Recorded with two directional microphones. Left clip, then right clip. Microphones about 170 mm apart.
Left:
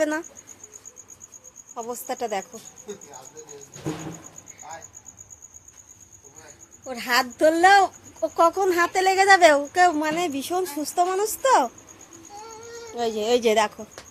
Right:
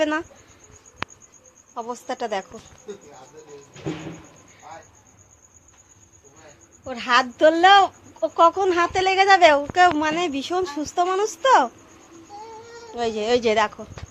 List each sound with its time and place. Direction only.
0.0 s speech: 20° left (ahead or behind)
1.7 s speech: 10° left (ahead or behind)
6.8 s speech: 10° left (ahead or behind)
8.9 s a woman's voice: 30° left (ahead or behind)
9.7 s speech: 15° left (ahead or behind)